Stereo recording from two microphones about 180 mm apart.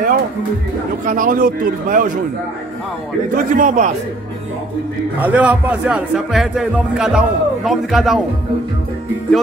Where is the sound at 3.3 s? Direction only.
45° right (ahead or behind).